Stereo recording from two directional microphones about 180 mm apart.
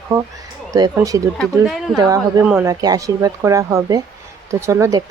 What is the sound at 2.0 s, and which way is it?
Speech, 20° right (ahead or behind).